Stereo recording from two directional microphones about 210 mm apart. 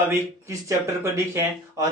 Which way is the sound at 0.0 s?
10° right (ahead or behind).